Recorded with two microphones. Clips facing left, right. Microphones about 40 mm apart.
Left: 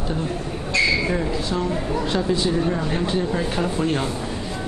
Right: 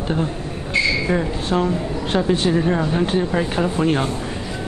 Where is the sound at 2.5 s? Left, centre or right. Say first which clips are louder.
Right 3 dB; right.